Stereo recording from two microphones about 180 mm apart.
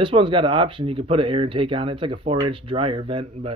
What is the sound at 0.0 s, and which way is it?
Speech, 25° right (ahead or behind).